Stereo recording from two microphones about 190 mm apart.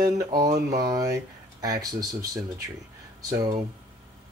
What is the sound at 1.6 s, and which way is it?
Speech, 20° right (ahead or behind).